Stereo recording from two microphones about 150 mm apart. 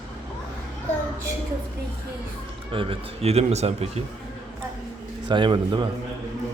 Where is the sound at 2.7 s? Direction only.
35° right (ahead or behind).